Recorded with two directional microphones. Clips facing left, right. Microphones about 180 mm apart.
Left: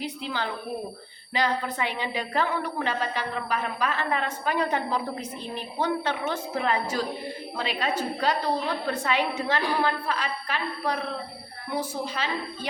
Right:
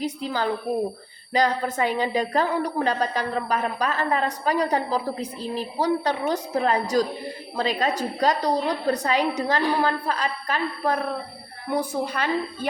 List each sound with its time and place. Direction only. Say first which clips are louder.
0.0 s a woman's voice: right 5 dB; 40° right (ahead or behind)